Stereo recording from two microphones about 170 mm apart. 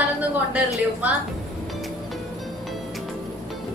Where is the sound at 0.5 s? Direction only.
10° right (ahead or behind).